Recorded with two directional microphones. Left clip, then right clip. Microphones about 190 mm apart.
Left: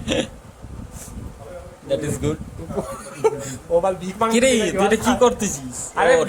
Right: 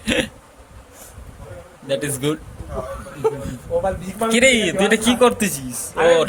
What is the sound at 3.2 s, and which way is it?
Speech, 40° left (ahead or behind).